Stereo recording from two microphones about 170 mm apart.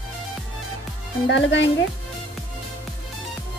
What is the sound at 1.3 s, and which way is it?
Speech, 90° left.